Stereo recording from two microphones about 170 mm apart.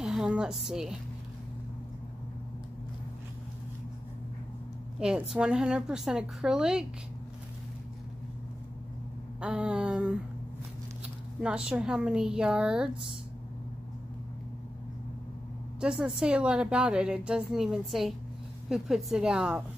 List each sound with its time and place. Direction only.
0.0 s a woman's voice: 5° right (ahead or behind)
4.9 s a woman's voice: 5° right (ahead or behind)
9.4 s a woman's voice: 5° right (ahead or behind)
11.4 s a woman's voice: 5° right (ahead or behind)
15.8 s a woman's voice: 5° right (ahead or behind)